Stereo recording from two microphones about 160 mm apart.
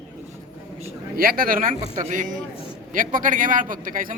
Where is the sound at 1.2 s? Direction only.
65° right (ahead or behind).